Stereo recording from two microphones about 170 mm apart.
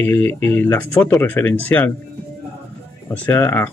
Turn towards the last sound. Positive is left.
turn(degrees=15)  # may be behind; listen again after turning